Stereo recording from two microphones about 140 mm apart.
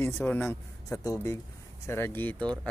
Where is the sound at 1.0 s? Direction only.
25° left (ahead or behind).